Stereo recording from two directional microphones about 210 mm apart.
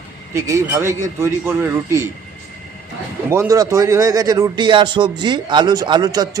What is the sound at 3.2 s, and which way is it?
Speech, 15° right (ahead or behind).